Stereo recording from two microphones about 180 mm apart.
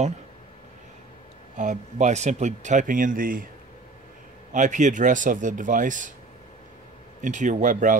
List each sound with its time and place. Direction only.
1.6 s speech: 45° right (ahead or behind)
4.5 s speech: 45° right (ahead or behind)
7.2 s speech: 45° right (ahead or behind)